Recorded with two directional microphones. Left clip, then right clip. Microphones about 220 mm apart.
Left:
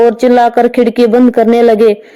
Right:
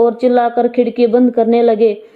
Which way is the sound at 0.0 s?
20° left (ahead or behind).